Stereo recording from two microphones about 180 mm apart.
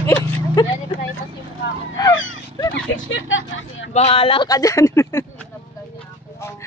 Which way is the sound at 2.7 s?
90° left.